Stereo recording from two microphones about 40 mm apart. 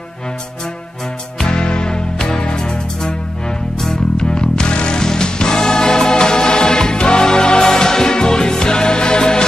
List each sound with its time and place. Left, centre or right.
1.4 s music: left